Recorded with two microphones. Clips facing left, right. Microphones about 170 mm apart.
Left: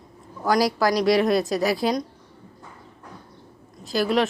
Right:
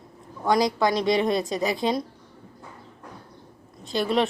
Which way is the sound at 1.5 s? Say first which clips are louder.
Left 3 dB; 20° right (ahead or behind).